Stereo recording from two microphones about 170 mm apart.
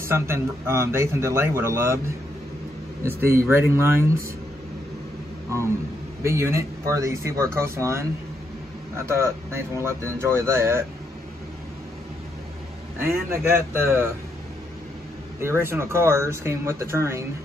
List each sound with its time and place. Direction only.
0.0 s speech: 15° right (ahead or behind)
3.0 s speech: 15° right (ahead or behind)
6.2 s speech: 15° right (ahead or behind)
13.0 s speech: 15° right (ahead or behind)
15.4 s speech: 15° right (ahead or behind)